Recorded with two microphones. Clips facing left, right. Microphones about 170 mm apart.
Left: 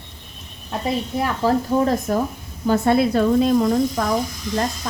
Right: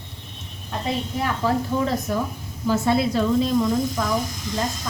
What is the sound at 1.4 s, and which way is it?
Speech, 45° left (ahead or behind).